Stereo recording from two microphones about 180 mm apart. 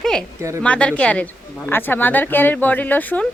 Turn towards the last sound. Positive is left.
turn(degrees=10)  # may be behind; listen again after turning